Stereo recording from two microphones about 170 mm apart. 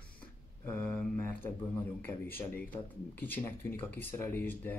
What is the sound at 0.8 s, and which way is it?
Speech, 5° left (ahead or behind).